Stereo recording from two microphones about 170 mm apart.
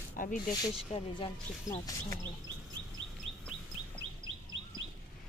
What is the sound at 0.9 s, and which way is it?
Speech, 40° left (ahead or behind).